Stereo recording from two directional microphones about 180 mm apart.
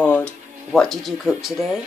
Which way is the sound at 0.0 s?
5° left (ahead or behind).